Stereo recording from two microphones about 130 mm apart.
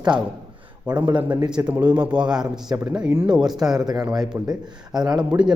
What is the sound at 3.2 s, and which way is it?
Speech, 5° right (ahead or behind).